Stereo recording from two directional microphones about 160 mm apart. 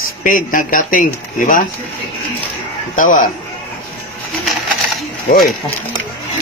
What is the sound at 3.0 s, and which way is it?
Speech, 55° left (ahead or behind).